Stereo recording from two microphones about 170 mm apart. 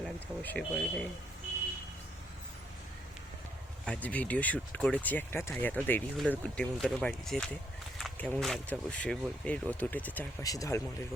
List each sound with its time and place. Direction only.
0.0 s speech: 5° left (ahead or behind)
3.8 s speech: 10° left (ahead or behind)
7.9 s a sound: centre (ahead or behind)
8.4 s speech: centre (ahead or behind)
10.4 s speech: 20° left (ahead or behind)